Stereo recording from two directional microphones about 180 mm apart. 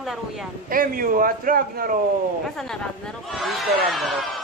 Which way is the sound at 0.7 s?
50° right (ahead or behind).